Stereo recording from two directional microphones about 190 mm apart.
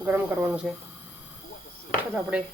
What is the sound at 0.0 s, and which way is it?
Speech, 10° right (ahead or behind).